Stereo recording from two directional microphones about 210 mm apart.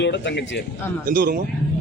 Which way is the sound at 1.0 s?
40° right (ahead or behind).